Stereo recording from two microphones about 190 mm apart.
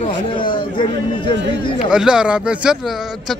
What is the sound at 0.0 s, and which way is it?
Chatter, 25° left (ahead or behind).